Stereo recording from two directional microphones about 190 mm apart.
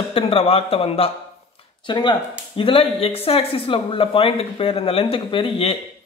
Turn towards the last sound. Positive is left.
turn(degrees=30)  # may be behind; listen again after turning